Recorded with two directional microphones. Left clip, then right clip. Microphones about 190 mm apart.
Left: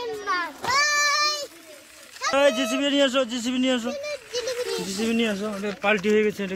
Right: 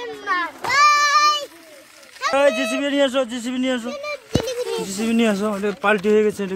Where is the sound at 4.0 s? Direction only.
40° right (ahead or behind).